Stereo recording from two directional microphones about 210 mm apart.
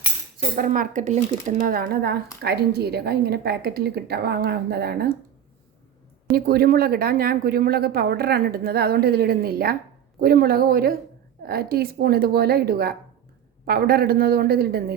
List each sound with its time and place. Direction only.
0.5 s speech: 40° right (ahead or behind)
6.3 s speech: 45° right (ahead or behind)